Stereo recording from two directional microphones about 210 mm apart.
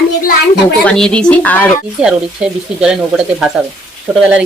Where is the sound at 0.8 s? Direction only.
5° left (ahead or behind).